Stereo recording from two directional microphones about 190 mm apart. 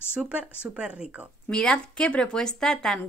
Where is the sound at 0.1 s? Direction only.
5° right (ahead or behind).